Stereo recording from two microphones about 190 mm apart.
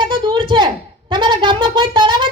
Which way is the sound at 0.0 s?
25° right (ahead or behind).